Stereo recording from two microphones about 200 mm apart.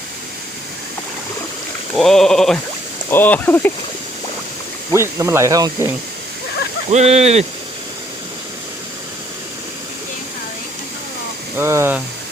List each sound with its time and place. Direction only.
2.0 s sheep: centre (ahead or behind)
3.1 s speech: 10° left (ahead or behind)
4.9 s speech: 15° right (ahead or behind)
6.9 s speech: 35° right (ahead or behind)
11.5 s speech: 15° right (ahead or behind)